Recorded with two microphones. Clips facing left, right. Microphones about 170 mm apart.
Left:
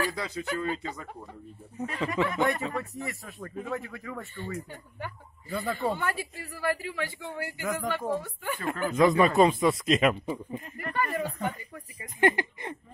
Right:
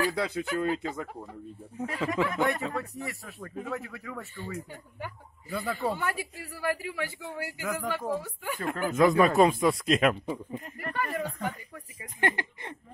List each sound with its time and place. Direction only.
0.1 s speech: 60° right (ahead or behind)
1.8 s speech: 5° right (ahead or behind); by 12.7 s 10° left (ahead or behind)